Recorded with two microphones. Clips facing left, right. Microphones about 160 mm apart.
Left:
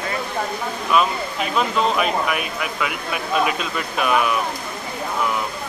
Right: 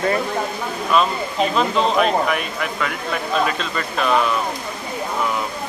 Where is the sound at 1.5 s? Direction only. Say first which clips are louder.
Right 1 dB; 5° left (ahead or behind).